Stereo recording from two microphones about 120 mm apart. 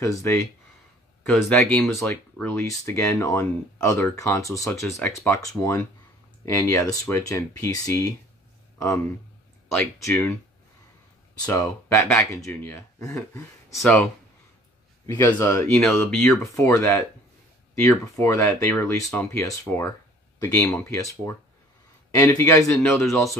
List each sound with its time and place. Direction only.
0.0 s speech: 25° left (ahead or behind)
1.2 s speech: 5° left (ahead or behind)
1.7 s speech: 20° left (ahead or behind)
11.5 s speech: 25° left (ahead or behind)
13.7 s speech: 5° left (ahead or behind)
15.1 s speech: 15° left (ahead or behind)
15.5 s speech: 25° left (ahead or behind)